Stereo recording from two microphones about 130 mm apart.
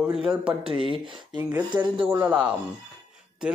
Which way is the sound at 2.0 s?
15° right (ahead or behind).